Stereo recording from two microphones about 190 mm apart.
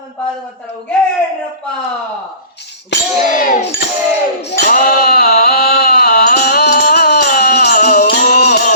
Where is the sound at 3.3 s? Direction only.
45° left (ahead or behind).